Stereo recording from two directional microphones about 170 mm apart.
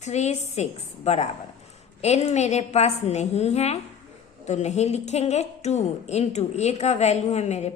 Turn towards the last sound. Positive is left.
turn(degrees=40)  # may be behind; listen again after turning